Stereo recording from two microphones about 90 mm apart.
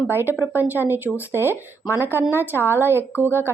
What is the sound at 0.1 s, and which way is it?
Speech, 25° right (ahead or behind).